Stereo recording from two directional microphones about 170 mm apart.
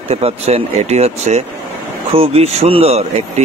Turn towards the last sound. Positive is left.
turn(degrees=-40)  # may be behind; listen again after turning